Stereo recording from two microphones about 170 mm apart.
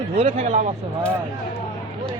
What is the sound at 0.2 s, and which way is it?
Speech, 40° right (ahead or behind).